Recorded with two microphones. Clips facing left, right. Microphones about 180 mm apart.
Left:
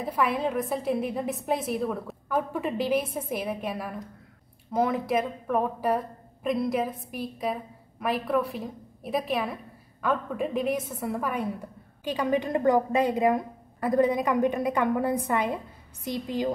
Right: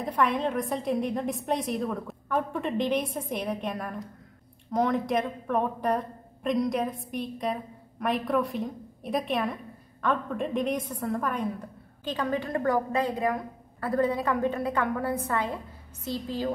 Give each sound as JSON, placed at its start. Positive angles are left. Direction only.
{"t": 0.0, "sound": "a woman's voice", "side_deg": 5}